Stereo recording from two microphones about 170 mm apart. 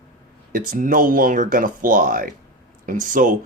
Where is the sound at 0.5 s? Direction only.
55° right (ahead or behind).